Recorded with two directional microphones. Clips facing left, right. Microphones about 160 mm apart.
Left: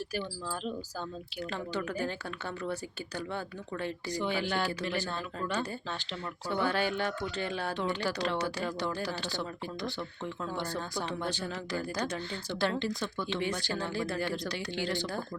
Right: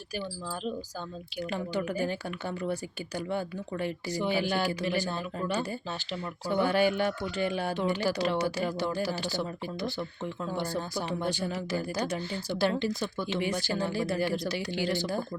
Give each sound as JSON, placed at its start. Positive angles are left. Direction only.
{"t": 1.5, "sound": "speech", "side_deg": -15}
{"t": 3.2, "sound": "speech", "side_deg": -15}